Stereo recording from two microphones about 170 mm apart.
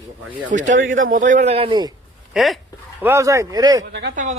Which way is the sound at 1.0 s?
50° right (ahead or behind).